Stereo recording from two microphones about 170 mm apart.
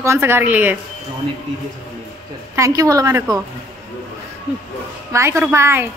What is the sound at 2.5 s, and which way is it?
Speech, 20° right (ahead or behind).